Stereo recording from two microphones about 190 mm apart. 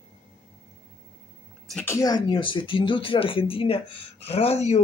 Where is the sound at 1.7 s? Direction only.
15° left (ahead or behind).